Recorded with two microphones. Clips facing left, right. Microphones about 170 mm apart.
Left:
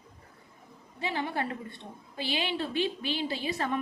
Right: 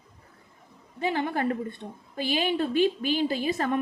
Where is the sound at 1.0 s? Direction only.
45° right (ahead or behind).